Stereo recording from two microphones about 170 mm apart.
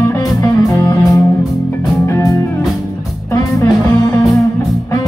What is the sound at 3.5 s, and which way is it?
Music, 20° left (ahead or behind).